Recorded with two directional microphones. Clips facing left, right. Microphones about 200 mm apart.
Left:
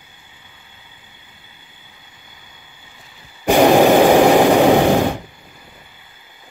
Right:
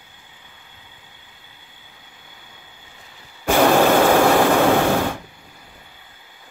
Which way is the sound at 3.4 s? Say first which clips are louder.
Left 4 dB; 15° left (ahead or behind).